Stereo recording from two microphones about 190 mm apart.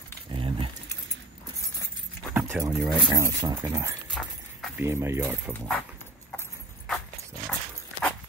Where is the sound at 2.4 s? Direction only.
10° right (ahead or behind).